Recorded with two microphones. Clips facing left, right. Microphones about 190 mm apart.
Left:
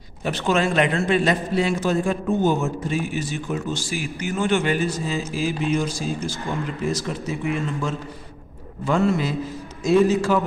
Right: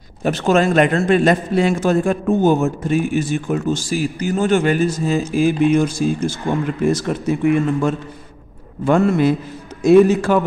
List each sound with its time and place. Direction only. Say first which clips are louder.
0.2 s a man's voice: right 6 dB; 45° right (ahead or behind)
5.3 s speech: right 9 dB; 55° right (ahead or behind)